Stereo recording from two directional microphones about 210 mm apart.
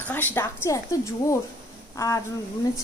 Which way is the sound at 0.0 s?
10° left (ahead or behind).